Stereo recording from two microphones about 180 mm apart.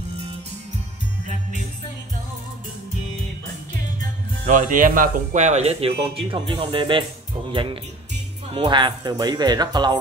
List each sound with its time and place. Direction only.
4.5 s speech: 45° right (ahead or behind); by 7.1 s 25° right (ahead or behind)
8.5 s speech: 25° right (ahead or behind)